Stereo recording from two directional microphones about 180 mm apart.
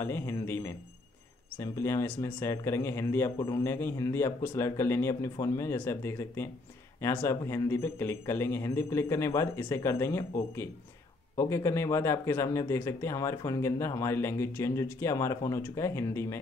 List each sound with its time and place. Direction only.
0.0 s speech: 15° left (ahead or behind)